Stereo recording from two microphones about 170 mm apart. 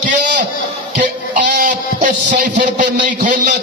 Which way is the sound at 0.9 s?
50° right (ahead or behind).